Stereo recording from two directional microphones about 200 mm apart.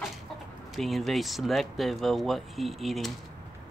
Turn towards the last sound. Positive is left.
turn(degrees=0)  # may be behind; listen again after turning